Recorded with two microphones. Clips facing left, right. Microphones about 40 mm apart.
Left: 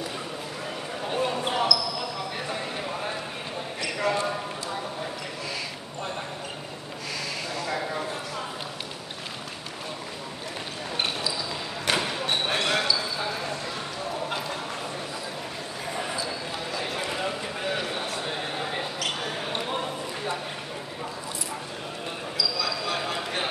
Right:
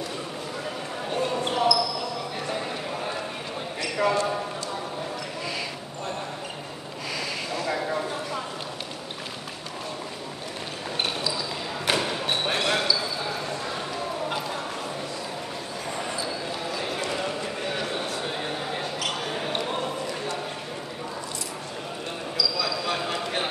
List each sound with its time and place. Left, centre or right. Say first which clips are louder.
1.1 s basketball bounce: even; centre
2.4 s clip-clop: right 1 dB; centre
3.8 s basketball bounce: right 3 dB; centre
7.5 s a sound: right 3 dB; centre
11.0 s a sound: right 1 dB; centre
11.8 s basketball bounce: right 1 dB; centre
15.9 s basketball bounce: left 1 dB; centre
16.3 s clip-clop: right 2 dB; centre
18.9 s basketball bounce: right 1 dB; centre
22.6 s a sound: right 1 dB; centre